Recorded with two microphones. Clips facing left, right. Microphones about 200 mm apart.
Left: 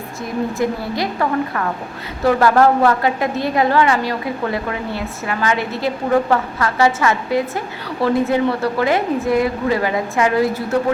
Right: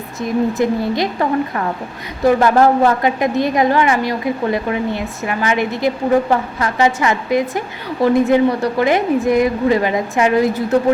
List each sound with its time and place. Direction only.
0.2 s a woman's voice: 20° right (ahead or behind)